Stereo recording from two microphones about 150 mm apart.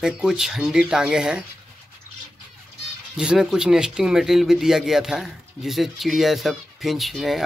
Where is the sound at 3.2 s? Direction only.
5° right (ahead or behind).